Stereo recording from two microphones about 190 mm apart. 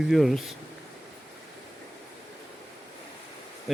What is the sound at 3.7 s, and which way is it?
Bee, centre (ahead or behind).